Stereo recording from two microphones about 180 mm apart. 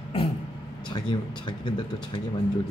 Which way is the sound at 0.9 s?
25° left (ahead or behind).